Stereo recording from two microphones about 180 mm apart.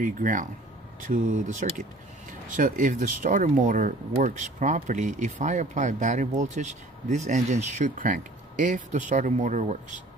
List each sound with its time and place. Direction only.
0.0 s speech: 45° right (ahead or behind)